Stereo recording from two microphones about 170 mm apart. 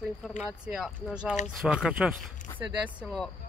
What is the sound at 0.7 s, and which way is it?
Speech, centre (ahead or behind).